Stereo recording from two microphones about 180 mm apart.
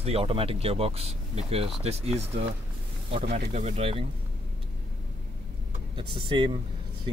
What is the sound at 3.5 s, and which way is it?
Speech, 35° right (ahead or behind).